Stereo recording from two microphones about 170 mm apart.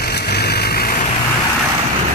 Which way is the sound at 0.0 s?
70° left (ahead or behind).